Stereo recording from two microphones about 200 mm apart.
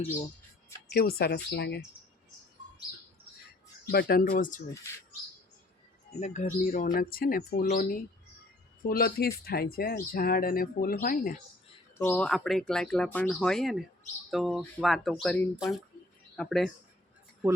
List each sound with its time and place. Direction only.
0.9 s speech: 50° left (ahead or behind)
3.9 s speech: 45° left (ahead or behind)
6.1 s speech: 35° left (ahead or behind)
11.9 s speech: 10° left (ahead or behind)